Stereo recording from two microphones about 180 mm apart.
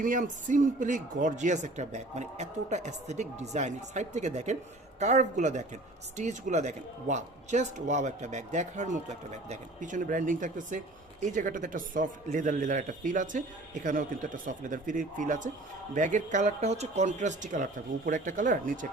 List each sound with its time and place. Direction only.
0.0 s a man's voice: 45° right (ahead or behind)